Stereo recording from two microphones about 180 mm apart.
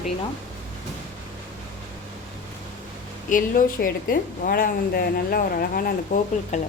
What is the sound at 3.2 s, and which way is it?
A woman's voice, 50° left (ahead or behind).